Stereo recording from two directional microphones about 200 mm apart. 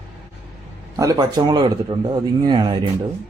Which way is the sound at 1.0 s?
15° right (ahead or behind).